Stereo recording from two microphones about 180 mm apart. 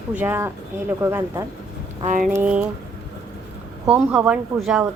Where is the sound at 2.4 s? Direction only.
5° right (ahead or behind).